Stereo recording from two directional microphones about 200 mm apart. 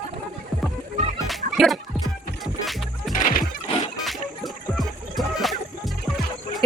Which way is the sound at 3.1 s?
40° left (ahead or behind).